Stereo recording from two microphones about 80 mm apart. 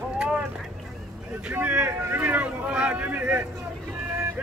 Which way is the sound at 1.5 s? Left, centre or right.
Centre.